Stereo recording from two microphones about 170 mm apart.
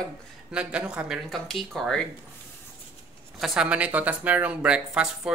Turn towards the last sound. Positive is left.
turn(degrees=-5)  # may be behind; listen again after turning